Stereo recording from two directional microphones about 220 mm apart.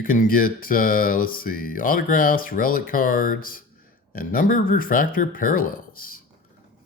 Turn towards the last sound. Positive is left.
turn(degrees=40)  # may be behind; listen again after turning